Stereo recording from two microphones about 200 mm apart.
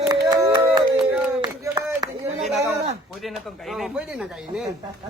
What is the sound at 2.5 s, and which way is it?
A man's voice, centre (ahead or behind).